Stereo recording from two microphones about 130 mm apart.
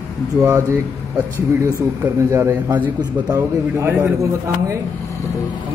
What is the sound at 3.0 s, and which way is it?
Speech, 30° right (ahead or behind).